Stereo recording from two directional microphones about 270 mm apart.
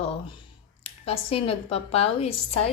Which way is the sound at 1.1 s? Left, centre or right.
Left.